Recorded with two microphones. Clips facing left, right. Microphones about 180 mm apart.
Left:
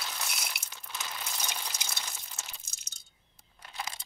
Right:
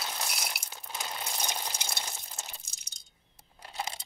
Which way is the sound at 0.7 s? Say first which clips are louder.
Right 3 dB; 35° right (ahead or behind).